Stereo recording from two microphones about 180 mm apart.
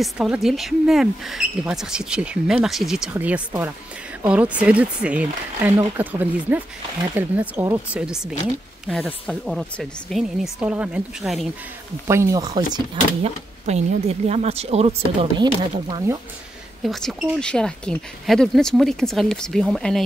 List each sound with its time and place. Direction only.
0.0 s speech: centre (ahead or behind)
12.1 s speech: 15° right (ahead or behind)
16.8 s speech: centre (ahead or behind)